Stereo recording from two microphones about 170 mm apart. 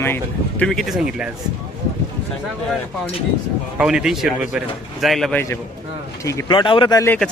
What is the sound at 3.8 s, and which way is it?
A man's voice, 5° right (ahead or behind).